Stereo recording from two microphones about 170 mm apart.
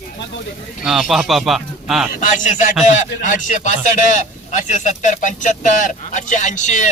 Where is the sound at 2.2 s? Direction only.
50° left (ahead or behind).